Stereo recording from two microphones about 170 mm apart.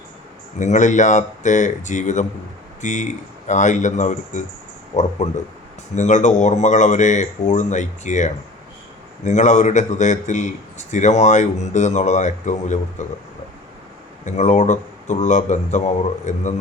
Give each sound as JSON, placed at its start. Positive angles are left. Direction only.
{"t": 0.6, "sound": "a man's voice", "side_deg": 45}
{"t": 14.3, "sound": "a man's voice", "side_deg": 45}